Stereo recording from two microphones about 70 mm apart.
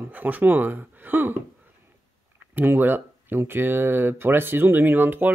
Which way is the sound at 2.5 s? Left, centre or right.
Right.